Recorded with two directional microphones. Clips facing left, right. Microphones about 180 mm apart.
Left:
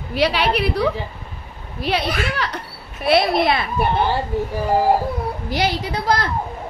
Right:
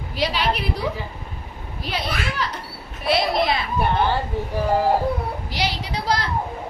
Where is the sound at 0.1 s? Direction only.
65° left (ahead or behind).